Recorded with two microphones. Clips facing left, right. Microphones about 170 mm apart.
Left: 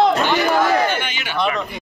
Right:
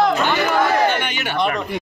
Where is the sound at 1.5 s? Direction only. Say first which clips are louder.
Right 1 dB; 65° right (ahead or behind).